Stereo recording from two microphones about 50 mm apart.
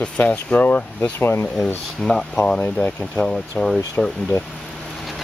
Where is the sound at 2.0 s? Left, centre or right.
Centre.